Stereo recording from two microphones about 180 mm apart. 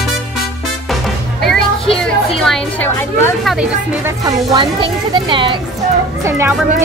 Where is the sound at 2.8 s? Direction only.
15° left (ahead or behind).